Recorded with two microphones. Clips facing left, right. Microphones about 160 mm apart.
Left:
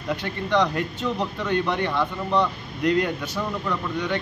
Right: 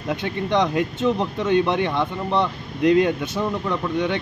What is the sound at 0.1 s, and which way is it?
Speech, 20° right (ahead or behind).